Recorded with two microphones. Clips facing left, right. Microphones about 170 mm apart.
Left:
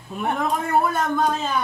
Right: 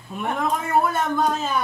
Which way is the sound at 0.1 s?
Centre (ahead or behind).